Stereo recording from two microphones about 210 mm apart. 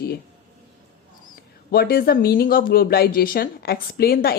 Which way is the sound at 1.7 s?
45° left (ahead or behind).